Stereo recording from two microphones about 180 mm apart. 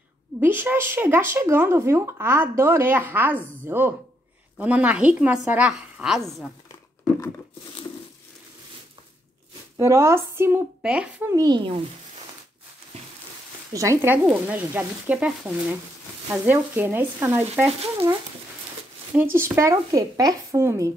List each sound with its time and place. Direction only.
0.4 s a woman's voice: 10° right (ahead or behind)
9.8 s speech: 15° right (ahead or behind)
13.7 s speech: 15° right (ahead or behind)
19.1 s speech: 15° right (ahead or behind)